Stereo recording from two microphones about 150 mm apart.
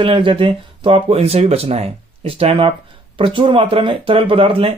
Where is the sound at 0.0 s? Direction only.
35° right (ahead or behind).